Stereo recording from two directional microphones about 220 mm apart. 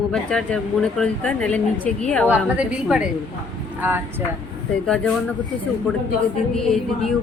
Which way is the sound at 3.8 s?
10° right (ahead or behind).